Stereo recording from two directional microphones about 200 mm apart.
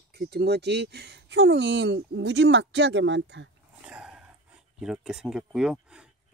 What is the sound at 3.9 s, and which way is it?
Dog, 5° right (ahead or behind).